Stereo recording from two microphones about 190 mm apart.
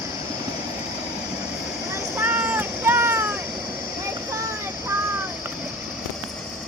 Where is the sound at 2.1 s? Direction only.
10° right (ahead or behind).